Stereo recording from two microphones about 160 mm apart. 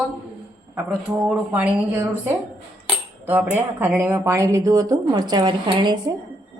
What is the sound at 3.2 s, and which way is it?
A woman's voice, 10° right (ahead or behind).